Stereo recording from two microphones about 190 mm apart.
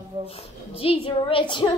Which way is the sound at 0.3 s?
30° left (ahead or behind).